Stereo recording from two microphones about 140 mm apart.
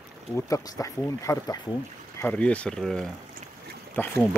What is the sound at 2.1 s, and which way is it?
Boat, 20° left (ahead or behind).